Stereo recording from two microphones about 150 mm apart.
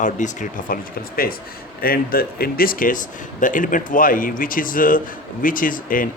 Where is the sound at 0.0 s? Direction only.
55° left (ahead or behind).